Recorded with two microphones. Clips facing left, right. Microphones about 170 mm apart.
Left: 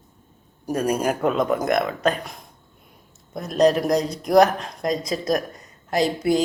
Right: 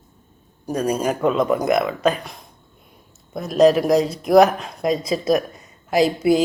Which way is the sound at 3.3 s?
5° right (ahead or behind).